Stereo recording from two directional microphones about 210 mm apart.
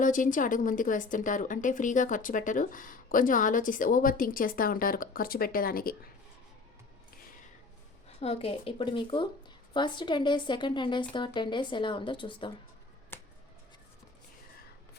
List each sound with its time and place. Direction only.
0.0 s speech: 40° left (ahead or behind)
8.2 s a woman's voice: 30° left (ahead or behind)
13.1 s a sound: 10° left (ahead or behind)